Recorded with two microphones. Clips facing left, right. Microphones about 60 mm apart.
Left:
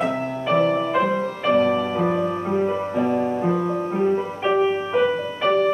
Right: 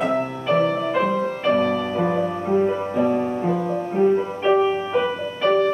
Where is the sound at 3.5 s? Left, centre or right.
Centre.